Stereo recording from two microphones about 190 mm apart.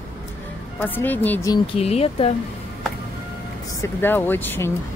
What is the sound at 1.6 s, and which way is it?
Speech, 30° left (ahead or behind).